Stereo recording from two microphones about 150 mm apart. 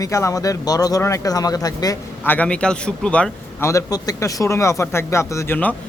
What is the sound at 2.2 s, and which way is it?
Speech, 10° left (ahead or behind).